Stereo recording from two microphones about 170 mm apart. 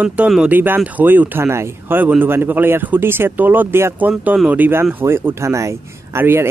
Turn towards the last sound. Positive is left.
turn(degrees=-15)  # may be behind; listen again after turning